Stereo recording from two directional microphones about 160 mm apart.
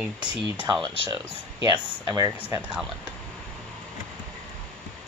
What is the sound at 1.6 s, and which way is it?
Speech, 25° right (ahead or behind).